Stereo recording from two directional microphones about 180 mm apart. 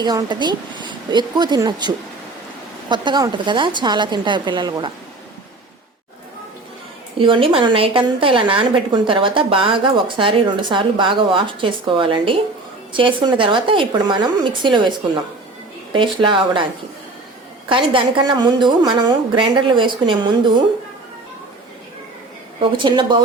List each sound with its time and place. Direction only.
0.0 s a woman's voice: 25° right (ahead or behind)
2.9 s a woman's voice: 25° right (ahead or behind)
7.2 s a woman's voice: 30° right (ahead or behind)
17.7 s a woman's voice: 25° right (ahead or behind)
22.6 s a woman's voice: 25° right (ahead or behind)